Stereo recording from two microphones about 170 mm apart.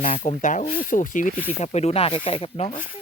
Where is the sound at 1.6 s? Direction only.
40° left (ahead or behind).